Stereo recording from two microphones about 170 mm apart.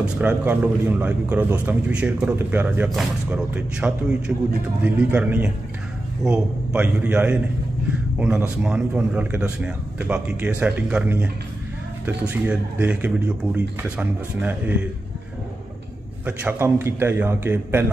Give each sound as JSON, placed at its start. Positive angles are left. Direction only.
{"t": 0.0, "sound": "a man's voice", "side_deg": -10}
{"t": 12.3, "sound": "a man's voice", "side_deg": -10}
{"t": 16.3, "sound": "a man's voice", "side_deg": -10}